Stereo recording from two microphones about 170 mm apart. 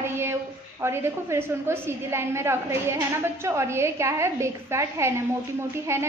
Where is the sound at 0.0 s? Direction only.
15° right (ahead or behind).